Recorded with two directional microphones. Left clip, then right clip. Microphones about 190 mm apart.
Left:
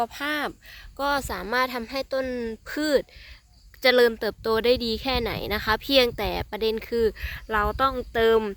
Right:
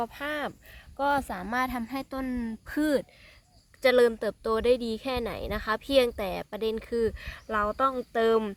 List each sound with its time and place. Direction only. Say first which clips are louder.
0.0 s a woman's voice: left 5 dB; 55° left (ahead or behind); by 8.5 s 25° left (ahead or behind)